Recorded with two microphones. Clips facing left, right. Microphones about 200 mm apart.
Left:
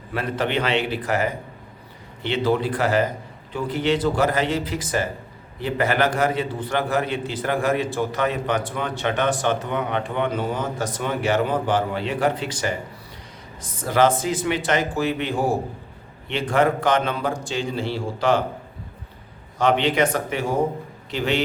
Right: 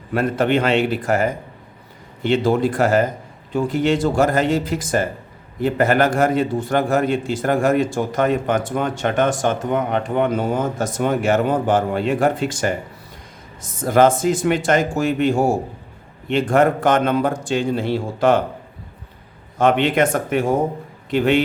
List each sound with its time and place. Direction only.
0.1 s a man's voice: 45° right (ahead or behind)
13.8 s a man's voice: 50° right (ahead or behind)
19.5 s a man's voice: 50° right (ahead or behind)